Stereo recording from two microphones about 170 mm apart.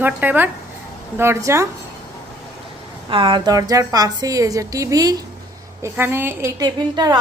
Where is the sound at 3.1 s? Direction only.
30° right (ahead or behind).